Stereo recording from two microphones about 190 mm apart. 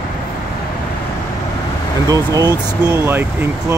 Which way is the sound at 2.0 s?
20° right (ahead or behind).